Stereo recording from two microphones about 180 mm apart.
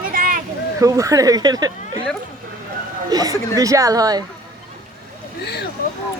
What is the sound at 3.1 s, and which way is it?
Speech, 20° right (ahead or behind).